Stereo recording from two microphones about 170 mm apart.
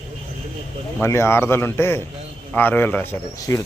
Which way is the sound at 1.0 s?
15° left (ahead or behind).